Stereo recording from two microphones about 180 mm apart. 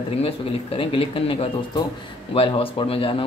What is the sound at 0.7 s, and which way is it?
A man's voice, 30° left (ahead or behind).